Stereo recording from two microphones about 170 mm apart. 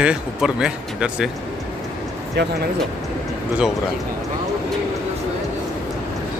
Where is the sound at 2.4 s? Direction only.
90° right.